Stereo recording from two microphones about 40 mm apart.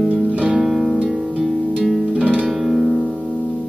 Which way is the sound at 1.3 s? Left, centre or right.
Centre.